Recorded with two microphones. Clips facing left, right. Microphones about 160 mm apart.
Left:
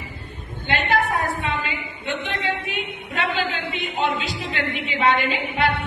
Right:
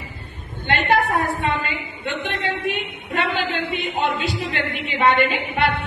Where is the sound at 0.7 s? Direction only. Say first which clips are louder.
Right 2 dB; 60° right (ahead or behind).